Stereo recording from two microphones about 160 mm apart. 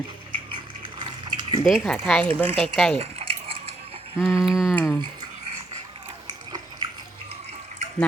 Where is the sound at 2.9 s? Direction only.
35° right (ahead or behind).